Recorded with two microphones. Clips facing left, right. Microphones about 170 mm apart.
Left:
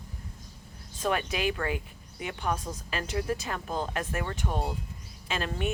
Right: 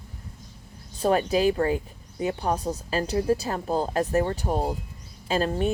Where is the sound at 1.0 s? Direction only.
35° right (ahead or behind).